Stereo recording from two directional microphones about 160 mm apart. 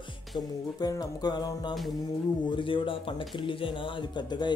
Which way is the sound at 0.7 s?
25° left (ahead or behind).